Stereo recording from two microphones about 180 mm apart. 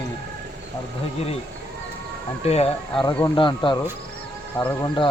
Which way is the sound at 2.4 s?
35° left (ahead or behind).